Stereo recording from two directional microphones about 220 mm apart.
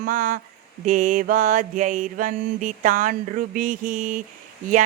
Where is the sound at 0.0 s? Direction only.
35° right (ahead or behind).